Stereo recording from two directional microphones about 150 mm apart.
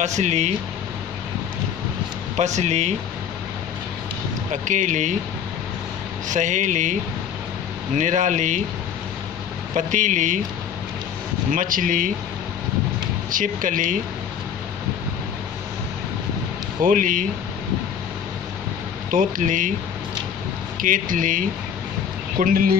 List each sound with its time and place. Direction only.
0.0 s speech: 50° right (ahead or behind)
2.3 s speech: 50° right (ahead or behind)
4.5 s speech: 55° right (ahead or behind)
6.2 s speech: 55° right (ahead or behind)
9.8 s speech: 55° right (ahead or behind)
11.5 s speech: 65° right (ahead or behind)
13.3 s speech: 60° right (ahead or behind)
16.8 s speech: 60° right (ahead or behind)
19.0 s speech: 65° right (ahead or behind)
20.8 s speech: 65° right (ahead or behind)
22.4 s speech: 70° right (ahead or behind)